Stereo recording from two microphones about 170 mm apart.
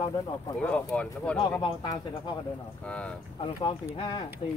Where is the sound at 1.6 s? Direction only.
25° left (ahead or behind).